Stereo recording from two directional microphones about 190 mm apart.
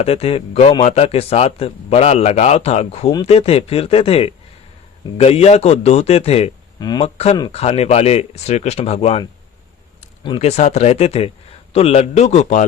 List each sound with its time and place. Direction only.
0.0 s a man's voice: 30° left (ahead or behind)
6.7 s speech: 20° left (ahead or behind)
7.5 s a man's voice: 35° left (ahead or behind)
10.2 s a man's voice: 30° left (ahead or behind)